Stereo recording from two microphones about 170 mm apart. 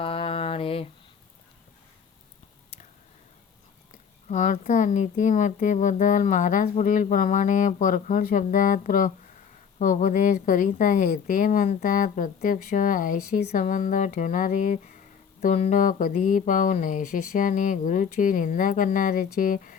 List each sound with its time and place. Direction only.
0.0 s a sound: 35° left (ahead or behind)
4.3 s a woman's voice: 50° left (ahead or behind)
15.8 s a woman's voice: 55° left (ahead or behind)